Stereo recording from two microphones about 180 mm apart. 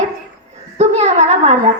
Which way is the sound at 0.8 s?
40° right (ahead or behind).